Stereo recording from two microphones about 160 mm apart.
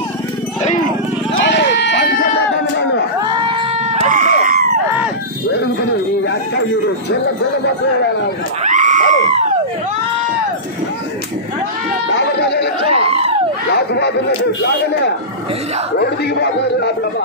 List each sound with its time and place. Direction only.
1.4 s sheep: 90° left
3.9 s a sound: 55° right (ahead or behind)
8.6 s screaming: 50° right (ahead or behind)
12.2 s chatter: 90° left
12.8 s a sound: 40° right (ahead or behind)
13.7 s a man's voice: 90° left
16.0 s a man's voice: 90° left